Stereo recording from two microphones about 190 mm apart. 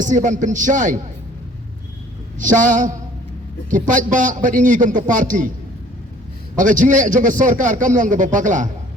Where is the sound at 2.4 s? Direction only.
40° right (ahead or behind).